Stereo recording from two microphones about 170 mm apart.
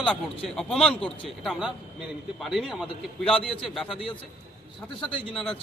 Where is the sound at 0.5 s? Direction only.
Centre (ahead or behind).